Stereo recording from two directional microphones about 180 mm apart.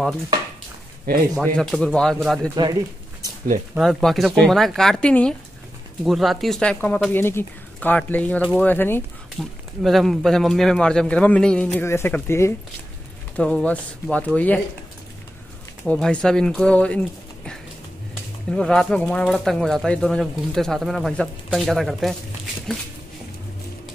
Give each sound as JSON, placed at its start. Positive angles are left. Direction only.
{"t": 1.3, "sound": "speech", "side_deg": 5}
{"t": 2.5, "sound": "speech", "side_deg": -20}
{"t": 3.7, "sound": "speech", "side_deg": 0}
{"t": 9.4, "sound": "speech", "side_deg": 0}
{"t": 15.8, "sound": "speech", "side_deg": 5}
{"t": 18.5, "sound": "speech", "side_deg": 0}